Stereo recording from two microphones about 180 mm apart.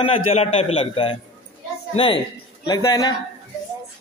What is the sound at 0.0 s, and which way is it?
A man's voice, 35° left (ahead or behind).